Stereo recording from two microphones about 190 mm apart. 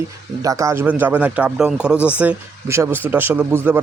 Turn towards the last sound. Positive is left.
turn(degrees=-10)  # may be behind; listen again after turning